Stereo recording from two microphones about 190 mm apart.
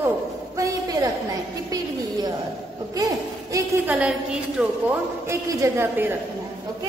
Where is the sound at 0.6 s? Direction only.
15° right (ahead or behind).